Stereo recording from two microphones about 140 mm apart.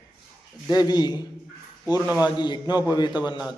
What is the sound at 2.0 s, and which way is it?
Speech, 10° right (ahead or behind).